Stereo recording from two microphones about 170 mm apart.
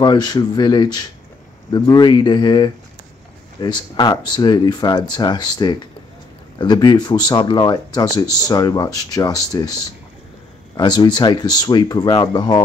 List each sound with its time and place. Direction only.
0.0 s speech: 25° left (ahead or behind)
10.8 s speech: 25° left (ahead or behind)